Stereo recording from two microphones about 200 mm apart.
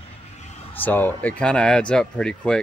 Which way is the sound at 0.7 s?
10° left (ahead or behind).